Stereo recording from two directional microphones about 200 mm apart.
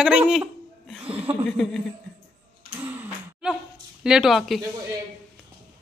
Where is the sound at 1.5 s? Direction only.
5° left (ahead or behind).